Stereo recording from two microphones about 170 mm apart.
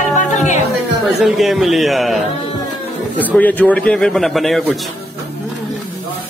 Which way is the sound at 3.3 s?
10° left (ahead or behind).